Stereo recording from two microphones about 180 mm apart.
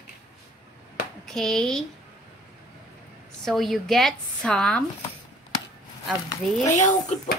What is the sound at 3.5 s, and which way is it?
A woman's voice, centre (ahead or behind).